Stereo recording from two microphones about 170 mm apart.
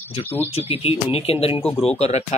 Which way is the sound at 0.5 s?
35° left (ahead or behind).